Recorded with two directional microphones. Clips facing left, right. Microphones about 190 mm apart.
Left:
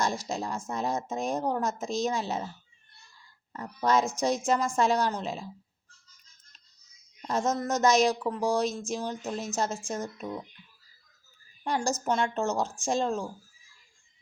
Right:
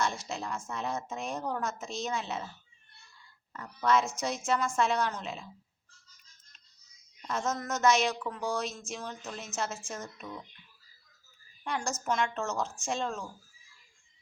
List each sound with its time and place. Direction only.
0.0 s speech: 35° left (ahead or behind)
3.5 s speech: 35° left (ahead or behind)
7.2 s speech: 35° left (ahead or behind)
11.6 s a woman's voice: 35° left (ahead or behind)